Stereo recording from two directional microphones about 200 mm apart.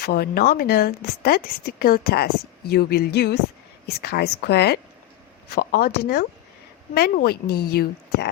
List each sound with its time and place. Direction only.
0.0 s a woman's voice: 50° left (ahead or behind)